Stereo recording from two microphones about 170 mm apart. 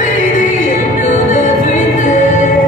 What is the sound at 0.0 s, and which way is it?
Music, 50° left (ahead or behind).